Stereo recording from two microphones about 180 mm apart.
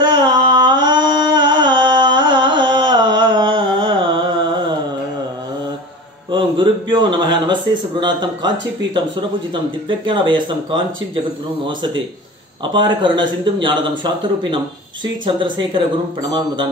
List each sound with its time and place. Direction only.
0.0 s carnatic music: 25° right (ahead or behind)
6.3 s a man's voice: 25° right (ahead or behind)